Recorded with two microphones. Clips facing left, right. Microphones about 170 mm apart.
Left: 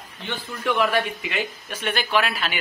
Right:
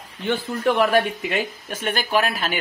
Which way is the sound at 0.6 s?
40° right (ahead or behind).